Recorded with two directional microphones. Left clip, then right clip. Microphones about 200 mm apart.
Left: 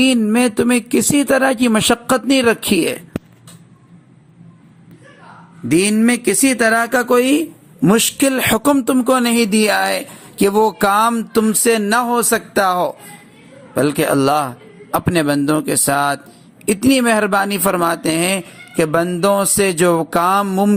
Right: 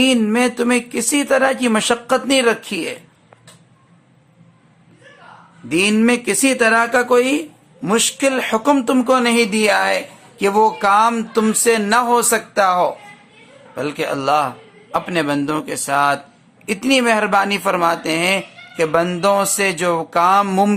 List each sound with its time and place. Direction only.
0.0 s speech: 25° left (ahead or behind)
5.6 s speech: 15° left (ahead or behind)
20.5 s speech: 15° left (ahead or behind)